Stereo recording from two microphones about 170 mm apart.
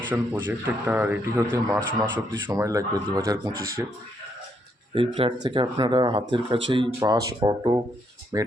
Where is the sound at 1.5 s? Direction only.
25° right (ahead or behind).